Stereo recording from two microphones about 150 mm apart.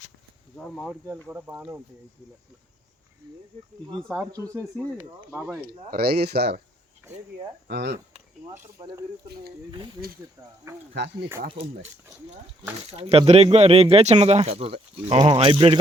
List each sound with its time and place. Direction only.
0.5 s speech: 5° left (ahead or behind); by 1.8 s 10° right (ahead or behind)
5.6 s speech: 90° right
7.0 s speech: 15° right (ahead or behind)
9.2 s speech: 90° right
10.7 s speech: 20° right (ahead or behind)
11.5 s speech: 40° right (ahead or behind)
12.9 s speech: 40° right (ahead or behind)
15.2 s speech: 30° right (ahead or behind)